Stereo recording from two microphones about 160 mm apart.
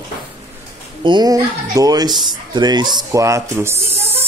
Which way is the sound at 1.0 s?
25° right (ahead or behind).